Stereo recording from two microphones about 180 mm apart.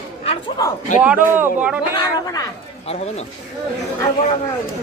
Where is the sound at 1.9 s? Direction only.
20° left (ahead or behind).